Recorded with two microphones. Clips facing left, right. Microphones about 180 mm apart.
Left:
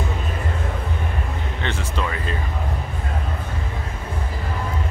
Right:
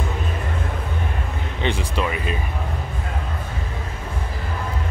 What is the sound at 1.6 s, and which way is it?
Speech, 15° right (ahead or behind).